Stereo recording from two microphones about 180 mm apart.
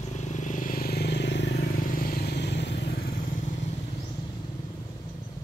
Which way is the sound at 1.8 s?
50° left (ahead or behind).